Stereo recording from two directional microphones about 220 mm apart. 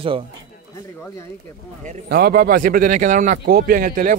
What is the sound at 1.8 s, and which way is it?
Speech, 45° right (ahead or behind).